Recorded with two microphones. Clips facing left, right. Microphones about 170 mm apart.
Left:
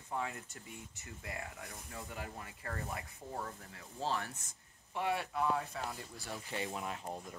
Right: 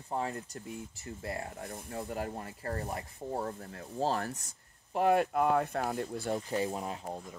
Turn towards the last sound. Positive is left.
turn(degrees=-35)  # may be behind; listen again after turning